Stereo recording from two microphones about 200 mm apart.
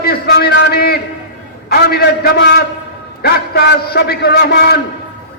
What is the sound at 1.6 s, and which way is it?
A man's voice, 50° left (ahead or behind).